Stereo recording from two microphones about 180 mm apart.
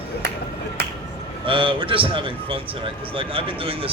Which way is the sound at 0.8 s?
65° right (ahead or behind).